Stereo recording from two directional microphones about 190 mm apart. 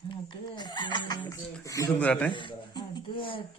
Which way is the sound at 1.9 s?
5° left (ahead or behind).